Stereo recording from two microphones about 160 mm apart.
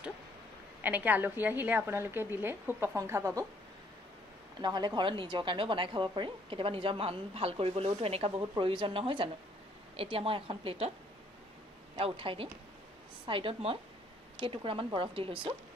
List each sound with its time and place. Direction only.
0.8 s a woman's voice: 10° right (ahead or behind)
4.6 s a woman's voice: 25° right (ahead or behind)
12.0 s a woman's voice: 35° right (ahead or behind)